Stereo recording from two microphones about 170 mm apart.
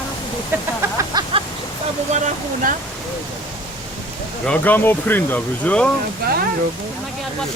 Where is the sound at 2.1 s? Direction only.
50° right (ahead or behind).